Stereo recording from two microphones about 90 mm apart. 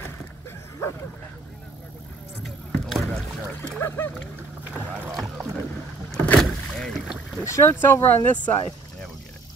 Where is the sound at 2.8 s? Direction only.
5° left (ahead or behind).